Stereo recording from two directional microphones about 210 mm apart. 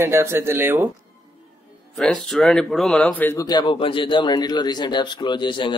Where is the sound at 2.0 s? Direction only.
Centre (ahead or behind).